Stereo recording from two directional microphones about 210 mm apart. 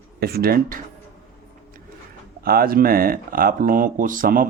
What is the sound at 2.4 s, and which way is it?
Speech, 45° right (ahead or behind).